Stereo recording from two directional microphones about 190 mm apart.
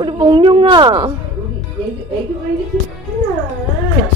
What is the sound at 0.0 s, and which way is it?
A woman's voice, 25° right (ahead or behind).